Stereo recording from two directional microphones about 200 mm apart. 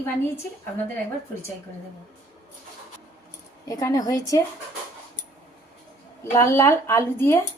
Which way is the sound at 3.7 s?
15° left (ahead or behind).